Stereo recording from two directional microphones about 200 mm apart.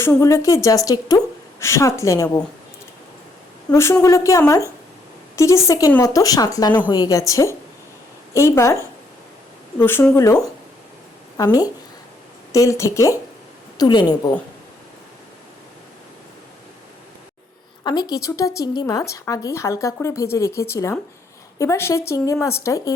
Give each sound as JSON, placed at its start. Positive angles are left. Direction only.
{"t": 0.0, "sound": "a woman's voice", "side_deg": 15}
{"t": 3.7, "sound": "a woman's voice", "side_deg": 15}
{"t": 17.8, "sound": "a woman's voice", "side_deg": 20}